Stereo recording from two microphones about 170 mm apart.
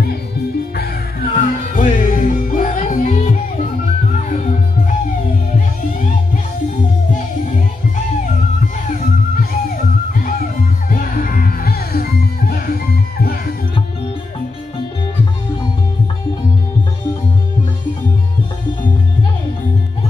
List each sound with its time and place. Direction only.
1.3 s music: 50° left (ahead or behind)
10.9 s music: 55° left (ahead or behind)